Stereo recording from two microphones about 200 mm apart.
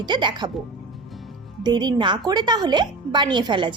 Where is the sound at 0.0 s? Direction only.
20° right (ahead or behind).